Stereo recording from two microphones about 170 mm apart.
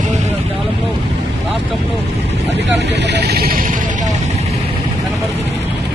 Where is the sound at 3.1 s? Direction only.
80° right.